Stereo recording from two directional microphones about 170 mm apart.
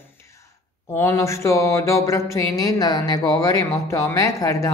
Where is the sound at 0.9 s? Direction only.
15° left (ahead or behind).